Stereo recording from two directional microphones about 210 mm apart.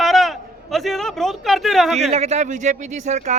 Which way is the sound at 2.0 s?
30° right (ahead or behind).